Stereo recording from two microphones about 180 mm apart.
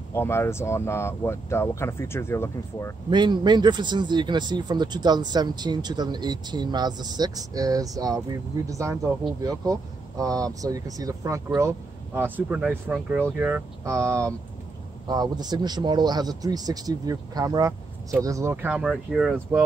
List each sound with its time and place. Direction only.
0.1 s speech: 15° left (ahead or behind)
3.1 s speech: 25° right (ahead or behind); by 19.6 s 5° right (ahead or behind)